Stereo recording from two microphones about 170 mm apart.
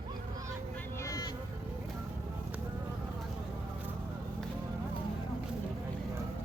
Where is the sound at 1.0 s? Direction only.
20° left (ahead or behind).